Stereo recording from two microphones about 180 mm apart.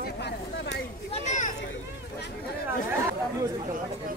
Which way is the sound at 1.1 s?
40° left (ahead or behind).